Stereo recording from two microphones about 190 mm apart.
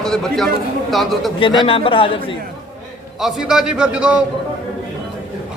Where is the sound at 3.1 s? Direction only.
Centre (ahead or behind).